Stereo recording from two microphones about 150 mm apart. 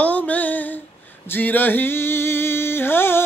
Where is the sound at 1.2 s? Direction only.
15° left (ahead or behind).